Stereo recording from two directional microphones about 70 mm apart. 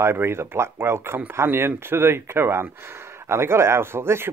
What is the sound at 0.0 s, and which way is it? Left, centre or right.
Speech, right.